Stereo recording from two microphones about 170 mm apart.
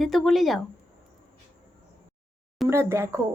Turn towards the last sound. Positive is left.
turn(degrees=-15)  # may be behind; listen again after turning